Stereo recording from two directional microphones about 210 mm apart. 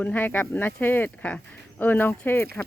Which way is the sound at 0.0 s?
10° left (ahead or behind).